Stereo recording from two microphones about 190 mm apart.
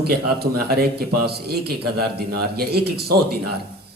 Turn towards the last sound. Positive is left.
turn(degrees=-55)  # may be behind; listen again after turning